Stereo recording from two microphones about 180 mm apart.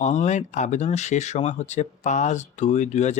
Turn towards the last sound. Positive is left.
turn(degrees=40)  # may be behind; listen again after turning